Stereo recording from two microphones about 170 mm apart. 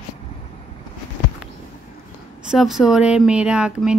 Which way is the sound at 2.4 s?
5° right (ahead or behind).